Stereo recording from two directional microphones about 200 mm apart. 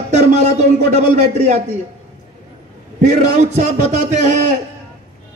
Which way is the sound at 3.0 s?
35° right (ahead or behind).